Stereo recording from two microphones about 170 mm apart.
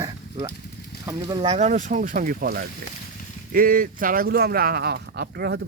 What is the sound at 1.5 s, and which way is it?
Speech, 45° right (ahead or behind).